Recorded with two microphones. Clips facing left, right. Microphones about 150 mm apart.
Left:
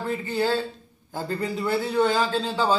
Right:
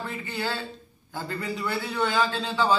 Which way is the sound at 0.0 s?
40° left (ahead or behind).